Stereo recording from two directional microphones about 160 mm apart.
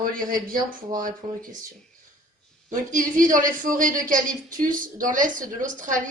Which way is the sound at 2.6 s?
55° right (ahead or behind).